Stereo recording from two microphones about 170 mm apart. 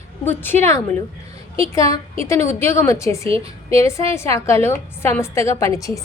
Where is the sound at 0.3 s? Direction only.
10° left (ahead or behind).